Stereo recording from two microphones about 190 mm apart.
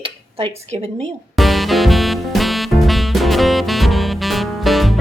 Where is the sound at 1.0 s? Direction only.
Centre (ahead or behind).